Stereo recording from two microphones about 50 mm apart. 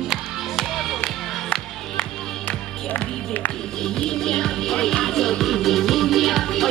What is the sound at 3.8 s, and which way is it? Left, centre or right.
Music, centre.